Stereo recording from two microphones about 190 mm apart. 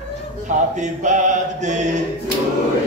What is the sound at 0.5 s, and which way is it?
A man's voice, 40° right (ahead or behind).